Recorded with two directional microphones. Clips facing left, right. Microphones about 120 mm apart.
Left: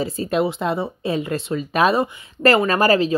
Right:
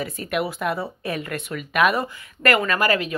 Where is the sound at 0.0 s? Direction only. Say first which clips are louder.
Left 5 dB; 30° left (ahead or behind).